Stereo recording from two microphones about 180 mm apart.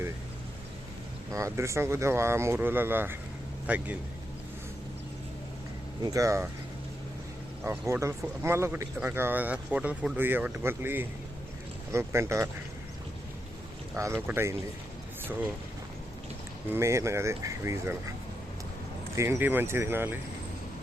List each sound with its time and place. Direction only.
1.3 s speech: 15° right (ahead or behind)
6.0 s speech: 20° right (ahead or behind)
7.6 s speech: 15° right (ahead or behind)
13.9 s speech: 15° right (ahead or behind)
16.7 s speech: 15° right (ahead or behind)
19.1 s speech: 15° right (ahead or behind)